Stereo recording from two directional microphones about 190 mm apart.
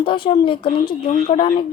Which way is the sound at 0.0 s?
25° left (ahead or behind).